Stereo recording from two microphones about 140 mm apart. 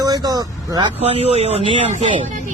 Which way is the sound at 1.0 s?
45° right (ahead or behind).